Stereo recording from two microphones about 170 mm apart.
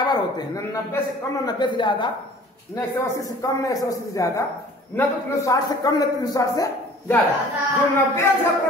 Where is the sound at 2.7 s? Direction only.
15° left (ahead or behind).